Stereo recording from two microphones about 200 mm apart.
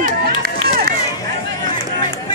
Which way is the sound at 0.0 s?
45° right (ahead or behind).